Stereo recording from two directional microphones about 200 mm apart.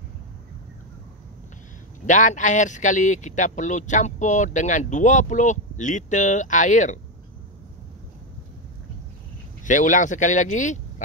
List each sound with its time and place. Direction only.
2.0 s speech: 40° left (ahead or behind)
9.7 s speech: 40° left (ahead or behind)